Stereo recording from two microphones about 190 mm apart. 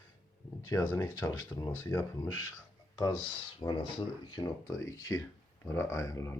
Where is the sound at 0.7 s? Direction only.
15° left (ahead or behind).